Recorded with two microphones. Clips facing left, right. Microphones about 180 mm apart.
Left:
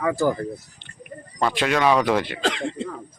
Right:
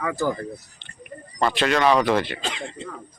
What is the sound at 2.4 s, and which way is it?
Speech, 90° left.